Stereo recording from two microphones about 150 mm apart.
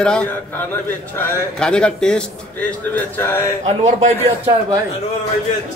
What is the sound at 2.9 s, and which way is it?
Speech, 15° left (ahead or behind).